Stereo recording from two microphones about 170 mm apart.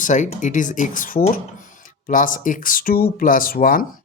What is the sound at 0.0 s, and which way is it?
Speech, 45° left (ahead or behind).